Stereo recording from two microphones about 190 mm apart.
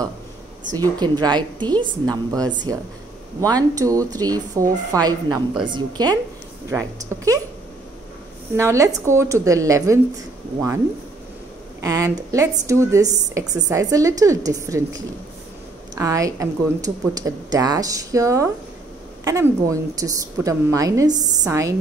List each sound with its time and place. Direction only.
0.7 s speech: 20° right (ahead or behind)
8.5 s speech: 15° right (ahead or behind)
11.8 s speech: 20° right (ahead or behind)